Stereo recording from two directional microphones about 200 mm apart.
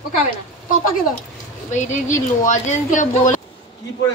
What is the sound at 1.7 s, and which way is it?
Speech, 35° left (ahead or behind).